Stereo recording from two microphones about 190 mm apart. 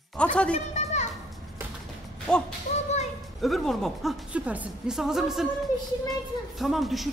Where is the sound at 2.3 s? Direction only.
5° left (ahead or behind).